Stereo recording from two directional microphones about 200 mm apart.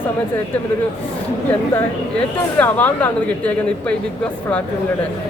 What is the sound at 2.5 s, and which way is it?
Speech, 10° left (ahead or behind).